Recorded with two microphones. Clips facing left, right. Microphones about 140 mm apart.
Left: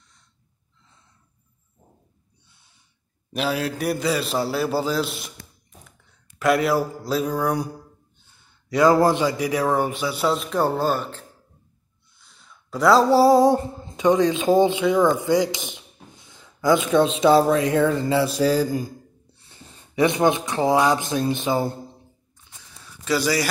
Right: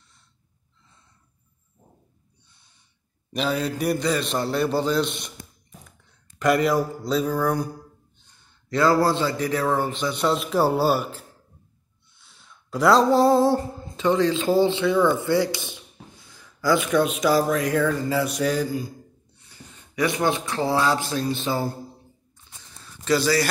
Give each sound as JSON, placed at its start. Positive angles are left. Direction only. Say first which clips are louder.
{"t": 3.3, "sound": "a man's voice", "louder": "even", "side_deg": 5}
{"t": 6.4, "sound": "a man's voice", "louder": "even", "side_deg": 0}
{"t": 12.2, "sound": "a sound", "louder": "left 1 dB", "side_deg": 0}
{"t": 16.3, "sound": "speech", "louder": "left 3 dB", "side_deg": 20}
{"t": 18.1, "sound": "mantra", "louder": "left 4 dB", "side_deg": 30}
{"t": 19.2, "sound": "speech", "louder": "even", "side_deg": 30}
{"t": 23.0, "sound": "speech", "louder": "right 1 dB", "side_deg": 10}